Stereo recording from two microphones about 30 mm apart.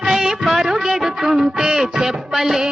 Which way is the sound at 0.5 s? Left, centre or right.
Centre.